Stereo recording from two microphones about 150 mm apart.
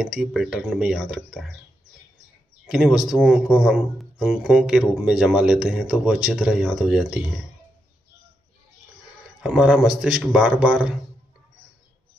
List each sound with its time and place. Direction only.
0.0 s speech: 5° right (ahead or behind)
2.6 s speech: 5° right (ahead or behind)
9.4 s speech: 5° right (ahead or behind)